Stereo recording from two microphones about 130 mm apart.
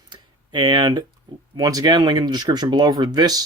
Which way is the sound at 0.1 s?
35° right (ahead or behind).